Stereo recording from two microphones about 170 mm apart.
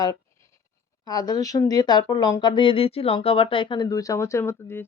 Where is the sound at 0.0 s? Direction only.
20° left (ahead or behind).